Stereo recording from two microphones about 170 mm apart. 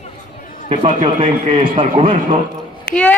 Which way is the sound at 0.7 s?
35° right (ahead or behind).